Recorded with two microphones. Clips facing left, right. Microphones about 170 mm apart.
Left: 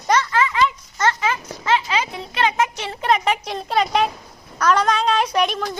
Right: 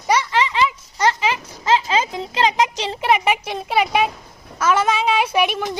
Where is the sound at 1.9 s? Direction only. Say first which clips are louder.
Right 3 dB; 30° right (ahead or behind).